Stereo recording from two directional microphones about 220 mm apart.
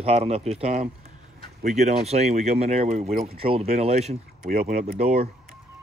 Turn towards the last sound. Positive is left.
turn(degrees=-30)  # may be behind; listen again after turning